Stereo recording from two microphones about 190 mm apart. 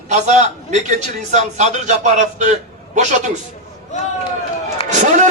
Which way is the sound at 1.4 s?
40° right (ahead or behind).